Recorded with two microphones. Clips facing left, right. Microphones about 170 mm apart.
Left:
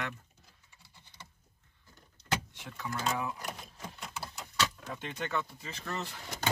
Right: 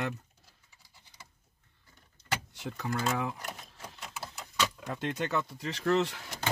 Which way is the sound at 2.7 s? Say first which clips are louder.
Right 2 dB; 90° right.